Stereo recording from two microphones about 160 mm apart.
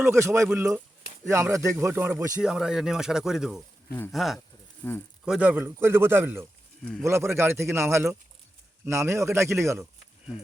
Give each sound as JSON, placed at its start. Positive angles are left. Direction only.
{"t": 0.0, "sound": "a man's voice", "side_deg": -15}
{"t": 4.8, "sound": "speech", "side_deg": 15}
{"t": 5.2, "sound": "a man's voice", "side_deg": -5}